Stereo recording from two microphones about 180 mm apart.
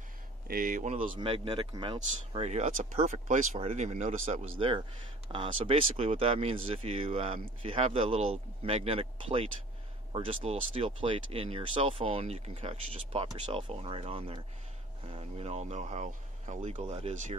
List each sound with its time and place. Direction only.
0.5 s speech: 50° right (ahead or behind)
1.1 s speech: 30° right (ahead or behind)